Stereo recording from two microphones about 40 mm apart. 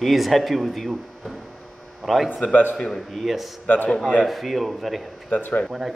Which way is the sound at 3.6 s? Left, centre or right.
Left.